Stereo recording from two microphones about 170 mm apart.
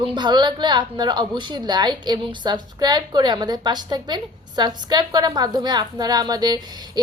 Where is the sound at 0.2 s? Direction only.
25° right (ahead or behind).